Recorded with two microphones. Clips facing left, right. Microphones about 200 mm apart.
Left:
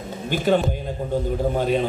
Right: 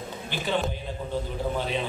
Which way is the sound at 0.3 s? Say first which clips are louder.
Left 10 dB; 45° left (ahead or behind).